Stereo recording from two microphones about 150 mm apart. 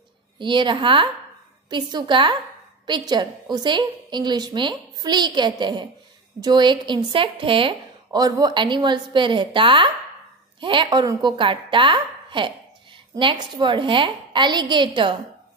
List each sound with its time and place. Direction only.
0.4 s a woman's voice: 30° right (ahead or behind)